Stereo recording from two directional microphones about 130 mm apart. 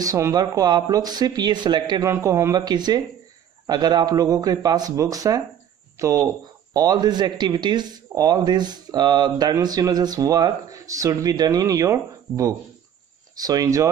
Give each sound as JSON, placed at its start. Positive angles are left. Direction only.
{"t": 0.0, "sound": "speech", "side_deg": -25}
{"t": 2.0, "sound": "a man's voice", "side_deg": -20}